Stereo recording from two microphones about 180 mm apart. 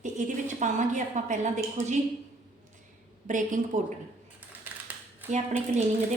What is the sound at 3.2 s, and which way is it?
Speech, 45° right (ahead or behind).